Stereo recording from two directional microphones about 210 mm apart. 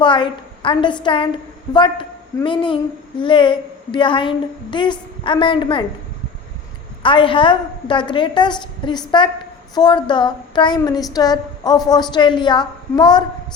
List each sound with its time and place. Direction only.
0.0 s a woman's voice: 25° left (ahead or behind)
7.0 s a woman's voice: 25° left (ahead or behind)